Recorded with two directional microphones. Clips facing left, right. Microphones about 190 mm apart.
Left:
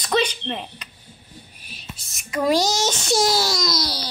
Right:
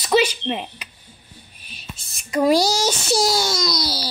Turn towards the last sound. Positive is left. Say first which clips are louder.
# right 1 dB
turn(degrees=0)  # may be behind; listen again after turning